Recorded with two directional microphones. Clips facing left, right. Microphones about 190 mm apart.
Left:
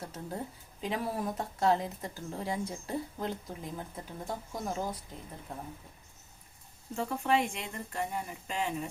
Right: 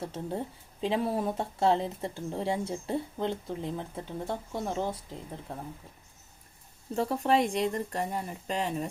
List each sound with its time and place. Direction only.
0.0 s speech: 30° right (ahead or behind)
6.9 s speech: 35° right (ahead or behind)